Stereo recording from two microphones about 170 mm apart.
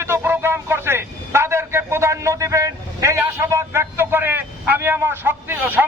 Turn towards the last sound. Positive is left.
turn(degrees=-10)  # may be behind; listen again after turning